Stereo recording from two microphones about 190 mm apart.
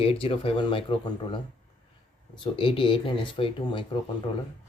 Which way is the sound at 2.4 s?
25° left (ahead or behind).